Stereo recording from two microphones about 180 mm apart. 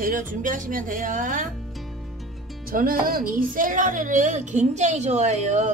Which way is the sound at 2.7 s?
55° right (ahead or behind).